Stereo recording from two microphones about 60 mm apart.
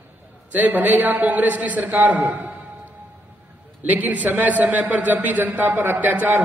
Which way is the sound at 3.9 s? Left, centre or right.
Right.